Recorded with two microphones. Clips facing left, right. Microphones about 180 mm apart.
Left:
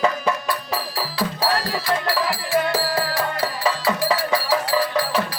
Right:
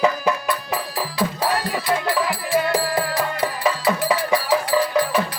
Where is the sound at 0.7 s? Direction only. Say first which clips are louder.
Right 1 dB; 20° right (ahead or behind).